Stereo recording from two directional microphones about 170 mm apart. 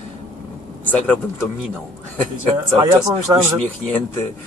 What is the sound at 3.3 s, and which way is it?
Speech, 20° right (ahead or behind).